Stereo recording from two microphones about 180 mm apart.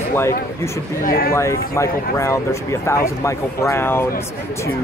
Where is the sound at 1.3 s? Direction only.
15° left (ahead or behind).